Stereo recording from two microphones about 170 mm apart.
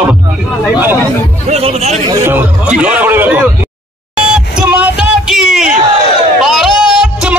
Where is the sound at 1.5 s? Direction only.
40° right (ahead or behind).